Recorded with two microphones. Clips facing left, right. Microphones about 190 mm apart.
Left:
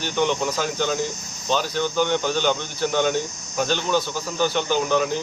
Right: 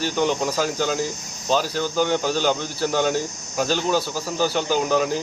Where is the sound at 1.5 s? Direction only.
35° right (ahead or behind).